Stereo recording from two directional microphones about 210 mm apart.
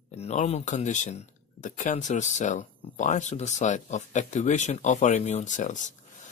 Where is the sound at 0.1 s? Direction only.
30° left (ahead or behind).